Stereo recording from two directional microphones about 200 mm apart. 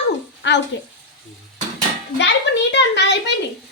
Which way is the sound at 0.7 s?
65° left (ahead or behind).